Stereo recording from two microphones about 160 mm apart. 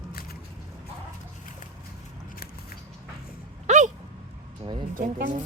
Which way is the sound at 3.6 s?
50° right (ahead or behind).